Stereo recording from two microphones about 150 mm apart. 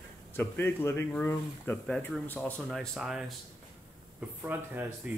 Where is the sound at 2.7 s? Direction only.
Centre (ahead or behind).